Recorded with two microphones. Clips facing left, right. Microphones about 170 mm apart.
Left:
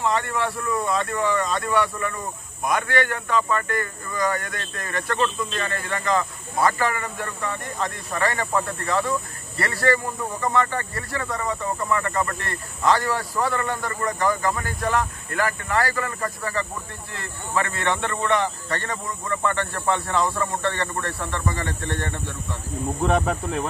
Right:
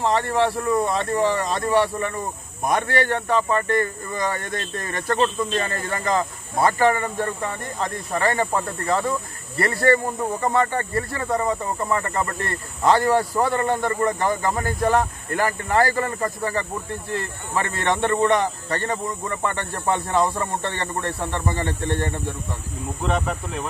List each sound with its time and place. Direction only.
0.0 s speech: 35° right (ahead or behind)
14.6 s speech: 40° right (ahead or behind); by 16.6 s 25° right (ahead or behind)
18.0 s speech: 25° right (ahead or behind)